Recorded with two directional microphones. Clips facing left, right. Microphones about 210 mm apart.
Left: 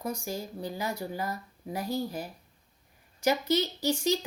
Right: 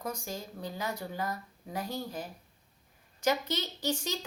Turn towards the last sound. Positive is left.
turn(degrees=10)  # may be behind; listen again after turning